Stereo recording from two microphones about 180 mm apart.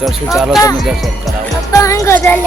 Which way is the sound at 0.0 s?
Centre (ahead or behind).